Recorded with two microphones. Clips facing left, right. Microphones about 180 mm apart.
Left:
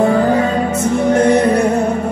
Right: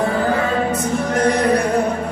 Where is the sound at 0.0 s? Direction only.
20° left (ahead or behind).